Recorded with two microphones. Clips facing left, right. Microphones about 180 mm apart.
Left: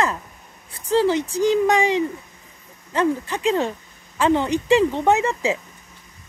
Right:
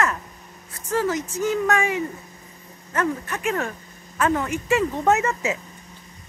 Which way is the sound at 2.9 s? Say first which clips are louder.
Left 4 dB; 25° left (ahead or behind).